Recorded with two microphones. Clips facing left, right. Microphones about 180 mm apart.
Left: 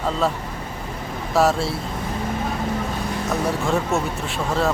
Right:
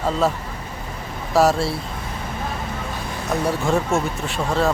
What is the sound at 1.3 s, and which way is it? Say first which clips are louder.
Speech: right 2 dB; centre (ahead or behind).